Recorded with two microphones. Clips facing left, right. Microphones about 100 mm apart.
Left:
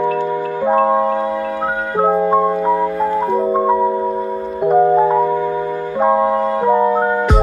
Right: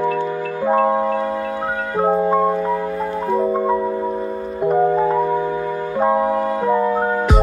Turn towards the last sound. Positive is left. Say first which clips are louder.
# left 3 dB
turn(degrees=20)  # may be behind; listen again after turning